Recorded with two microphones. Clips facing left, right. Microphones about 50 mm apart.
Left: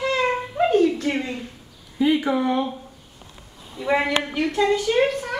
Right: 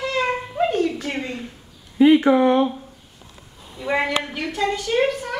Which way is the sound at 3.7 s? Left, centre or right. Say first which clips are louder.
Left 1 dB; centre.